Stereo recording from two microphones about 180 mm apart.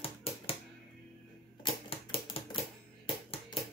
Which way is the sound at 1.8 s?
30° left (ahead or behind).